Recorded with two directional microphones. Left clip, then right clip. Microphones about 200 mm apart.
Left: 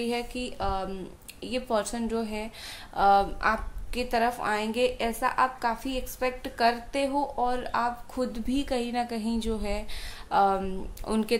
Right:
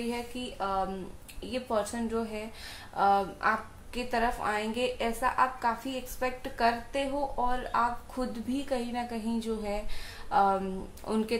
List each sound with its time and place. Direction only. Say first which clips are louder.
0.0 s a woman's voice: left 5 dB; 45° left (ahead or behind)